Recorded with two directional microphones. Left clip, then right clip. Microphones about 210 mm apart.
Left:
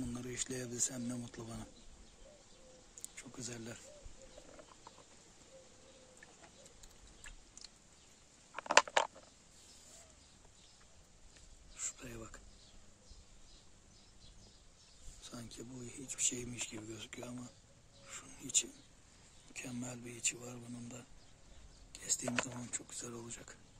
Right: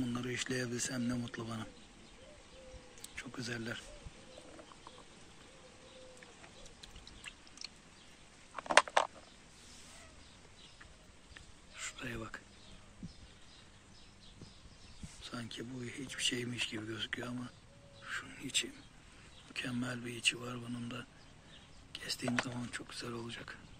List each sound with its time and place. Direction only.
0.0 s speech: 10° left (ahead or behind)
3.2 s speech: 5° left (ahead or behind)
8.5 s a sound: 30° left (ahead or behind)
11.8 s a sound: centre (ahead or behind)
15.2 s speech: 10° left (ahead or behind)
18.1 s crow: 10° left (ahead or behind)
19.5 s speech: 5° left (ahead or behind)
21.9 s a sound: 10° left (ahead or behind)
22.7 s speech: 10° left (ahead or behind)